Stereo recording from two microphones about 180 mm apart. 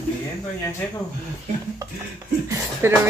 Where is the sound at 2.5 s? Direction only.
15° right (ahead or behind).